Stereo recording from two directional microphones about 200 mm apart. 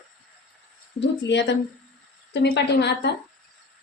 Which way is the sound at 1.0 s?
60° left (ahead or behind).